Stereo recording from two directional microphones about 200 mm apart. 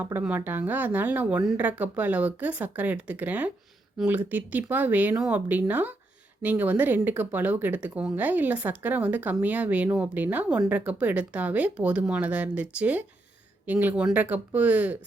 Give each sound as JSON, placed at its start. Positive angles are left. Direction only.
{"t": 0.0, "sound": "speech", "side_deg": -10}